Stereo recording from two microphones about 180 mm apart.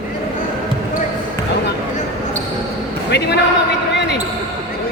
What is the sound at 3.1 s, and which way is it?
Speech, 70° left (ahead or behind).